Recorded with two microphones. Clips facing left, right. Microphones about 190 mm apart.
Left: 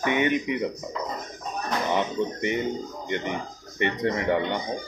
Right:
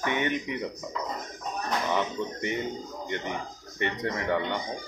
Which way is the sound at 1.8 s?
20° left (ahead or behind).